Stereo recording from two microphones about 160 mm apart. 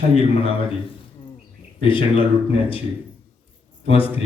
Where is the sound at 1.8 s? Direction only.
30° left (ahead or behind).